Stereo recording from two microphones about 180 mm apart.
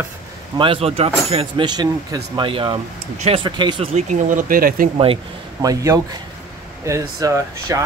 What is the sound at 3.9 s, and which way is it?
Speech, 45° right (ahead or behind).